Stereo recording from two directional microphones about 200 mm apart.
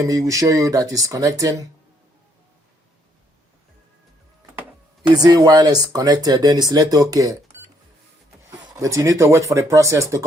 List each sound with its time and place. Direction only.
0.0 s speech: 15° right (ahead or behind)
5.1 s speech: 20° right (ahead or behind)
8.4 s speech: 15° right (ahead or behind)